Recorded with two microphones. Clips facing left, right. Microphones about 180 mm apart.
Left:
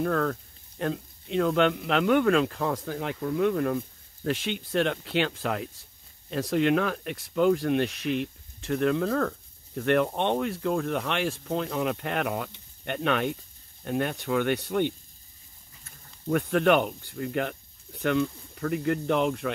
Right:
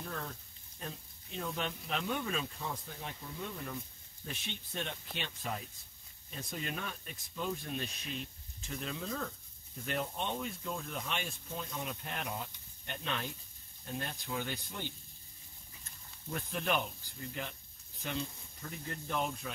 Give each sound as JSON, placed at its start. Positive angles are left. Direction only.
{"t": 0.0, "sound": "speech", "side_deg": 75}